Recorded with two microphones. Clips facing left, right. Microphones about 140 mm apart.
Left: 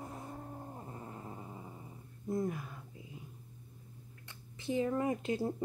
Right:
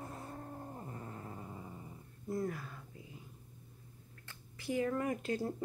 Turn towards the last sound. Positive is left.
turn(degrees=20)  # may be behind; listen again after turning